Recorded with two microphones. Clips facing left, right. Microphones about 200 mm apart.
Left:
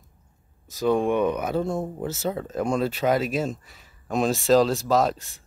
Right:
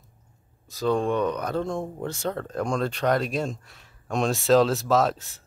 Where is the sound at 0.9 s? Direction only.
15° left (ahead or behind).